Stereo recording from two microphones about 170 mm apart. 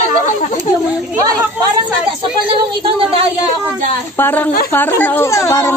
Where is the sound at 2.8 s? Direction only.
35° right (ahead or behind).